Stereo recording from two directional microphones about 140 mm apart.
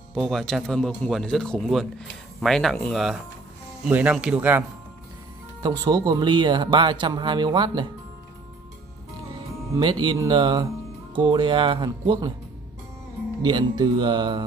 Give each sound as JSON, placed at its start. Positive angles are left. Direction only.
{"t": 0.1, "sound": "speech", "side_deg": 0}
{"t": 5.6, "sound": "speech", "side_deg": -30}
{"t": 9.8, "sound": "speech", "side_deg": -30}
{"t": 13.4, "sound": "speech", "side_deg": -30}